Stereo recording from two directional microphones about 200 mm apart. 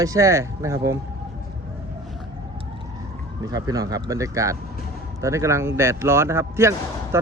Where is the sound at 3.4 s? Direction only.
20° right (ahead or behind).